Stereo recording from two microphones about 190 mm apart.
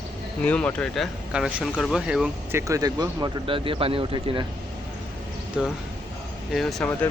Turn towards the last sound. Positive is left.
turn(degrees=5)  # may be behind; listen again after turning